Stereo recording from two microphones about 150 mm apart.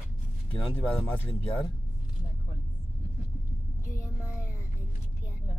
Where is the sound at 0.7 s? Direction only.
10° left (ahead or behind).